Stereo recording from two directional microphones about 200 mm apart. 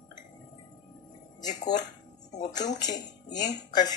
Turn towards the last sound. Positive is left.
turn(degrees=20)  # may be behind; listen again after turning